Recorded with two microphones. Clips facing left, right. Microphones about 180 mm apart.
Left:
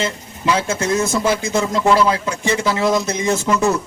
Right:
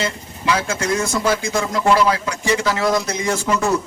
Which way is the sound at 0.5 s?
25° left (ahead or behind).